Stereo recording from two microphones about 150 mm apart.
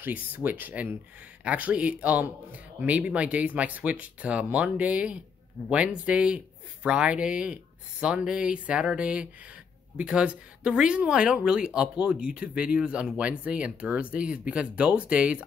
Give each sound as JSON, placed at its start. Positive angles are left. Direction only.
{"t": 0.0, "sound": "a man's voice", "side_deg": -10}